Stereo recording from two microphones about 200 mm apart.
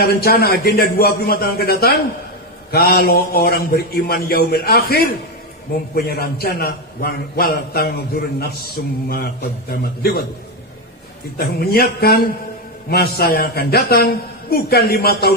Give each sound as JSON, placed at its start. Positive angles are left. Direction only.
{"t": 0.0, "sound": "a man's voice", "side_deg": 50}
{"t": 11.3, "sound": "a man's voice", "side_deg": 50}